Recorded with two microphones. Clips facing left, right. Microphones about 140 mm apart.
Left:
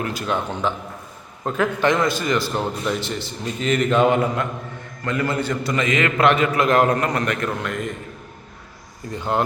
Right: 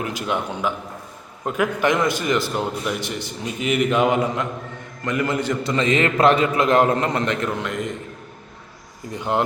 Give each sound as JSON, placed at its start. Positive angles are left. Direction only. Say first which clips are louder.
{"t": 0.0, "sound": "a man's voice", "louder": "left 1 dB", "side_deg": -15}
{"t": 9.1, "sound": "a man's voice", "louder": "even", "side_deg": -20}